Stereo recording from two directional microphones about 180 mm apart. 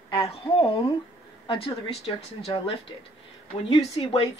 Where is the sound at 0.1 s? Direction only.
30° left (ahead or behind).